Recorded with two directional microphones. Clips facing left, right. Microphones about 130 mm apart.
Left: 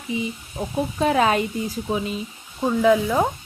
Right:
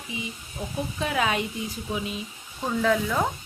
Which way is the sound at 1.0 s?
40° left (ahead or behind).